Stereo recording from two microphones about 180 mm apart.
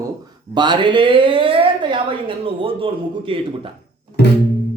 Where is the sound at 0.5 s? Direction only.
25° right (ahead or behind).